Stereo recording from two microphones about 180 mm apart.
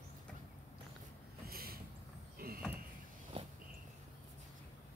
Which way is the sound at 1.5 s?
55° right (ahead or behind).